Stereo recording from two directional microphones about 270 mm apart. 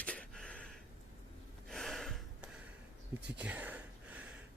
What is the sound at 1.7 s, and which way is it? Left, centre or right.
Gasp, centre.